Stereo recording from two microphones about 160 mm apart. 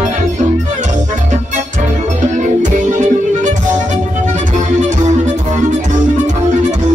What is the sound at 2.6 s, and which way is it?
Music, 50° right (ahead or behind).